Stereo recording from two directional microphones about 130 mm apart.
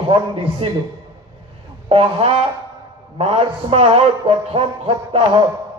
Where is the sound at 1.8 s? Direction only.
45° right (ahead or behind).